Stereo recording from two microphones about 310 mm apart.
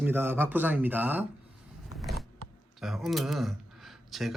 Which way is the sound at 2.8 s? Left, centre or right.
Centre.